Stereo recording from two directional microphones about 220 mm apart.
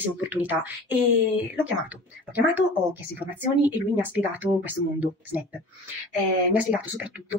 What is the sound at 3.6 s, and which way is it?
Speech, 10° right (ahead or behind).